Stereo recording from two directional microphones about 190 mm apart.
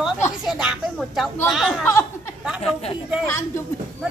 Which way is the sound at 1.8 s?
15° left (ahead or behind).